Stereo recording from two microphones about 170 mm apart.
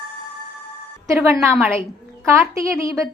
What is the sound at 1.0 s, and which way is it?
Speech, 15° right (ahead or behind).